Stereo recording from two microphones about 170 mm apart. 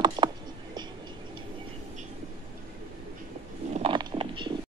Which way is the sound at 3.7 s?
30° right (ahead or behind).